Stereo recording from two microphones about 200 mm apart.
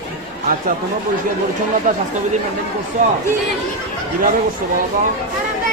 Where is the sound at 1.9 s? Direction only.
40° right (ahead or behind).